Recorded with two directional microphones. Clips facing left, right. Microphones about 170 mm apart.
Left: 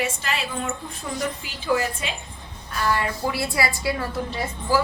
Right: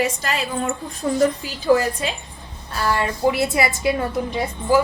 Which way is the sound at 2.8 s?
30° right (ahead or behind).